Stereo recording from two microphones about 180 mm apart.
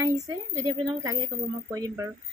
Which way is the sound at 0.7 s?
20° right (ahead or behind).